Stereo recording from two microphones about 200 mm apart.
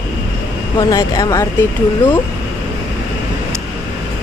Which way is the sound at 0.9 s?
20° left (ahead or behind).